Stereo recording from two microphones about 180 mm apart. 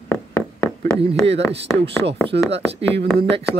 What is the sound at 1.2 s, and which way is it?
Speech, 35° right (ahead or behind).